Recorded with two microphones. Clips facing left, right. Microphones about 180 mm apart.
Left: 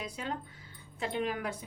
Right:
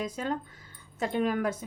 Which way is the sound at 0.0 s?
45° right (ahead or behind).